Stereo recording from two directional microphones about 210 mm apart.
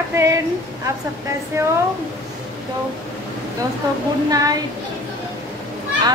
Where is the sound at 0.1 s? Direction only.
15° right (ahead or behind).